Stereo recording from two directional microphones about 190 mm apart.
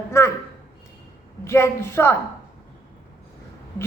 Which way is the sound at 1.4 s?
15° left (ahead or behind).